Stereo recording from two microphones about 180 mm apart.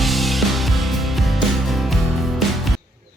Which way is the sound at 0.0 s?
Centre (ahead or behind).